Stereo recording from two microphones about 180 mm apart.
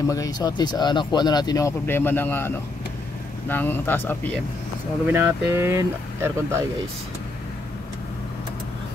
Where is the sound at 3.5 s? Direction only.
10° left (ahead or behind).